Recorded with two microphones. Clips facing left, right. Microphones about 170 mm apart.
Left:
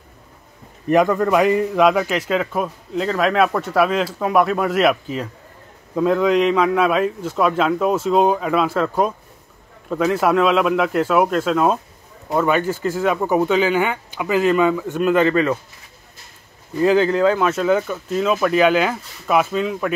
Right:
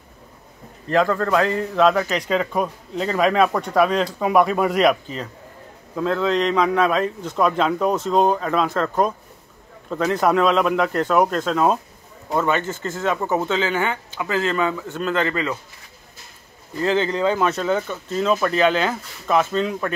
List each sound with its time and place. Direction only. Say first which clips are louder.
0.8 s a man's voice: left 3 dB; 15° left (ahead or behind)
16.8 s a man's voice: left 5 dB; 10° left (ahead or behind)